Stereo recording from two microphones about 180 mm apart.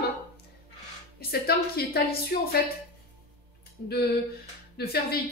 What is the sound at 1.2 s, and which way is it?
Music, 60° left (ahead or behind).